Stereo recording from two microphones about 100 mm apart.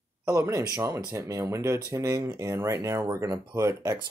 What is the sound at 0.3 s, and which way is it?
Speech, 30° right (ahead or behind).